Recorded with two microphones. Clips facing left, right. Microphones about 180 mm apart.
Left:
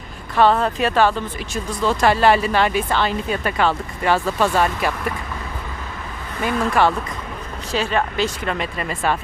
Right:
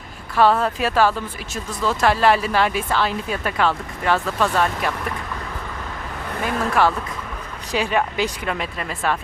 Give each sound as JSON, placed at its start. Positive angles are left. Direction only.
{"t": 0.3, "sound": "speech", "side_deg": -5}
{"t": 6.4, "sound": "speech", "side_deg": 0}
{"t": 7.7, "sound": "speech", "side_deg": -15}